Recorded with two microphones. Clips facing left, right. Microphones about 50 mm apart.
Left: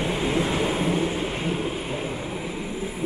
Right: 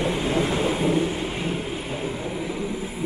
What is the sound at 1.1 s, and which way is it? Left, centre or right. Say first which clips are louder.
Thunder: left 1 dB; centre.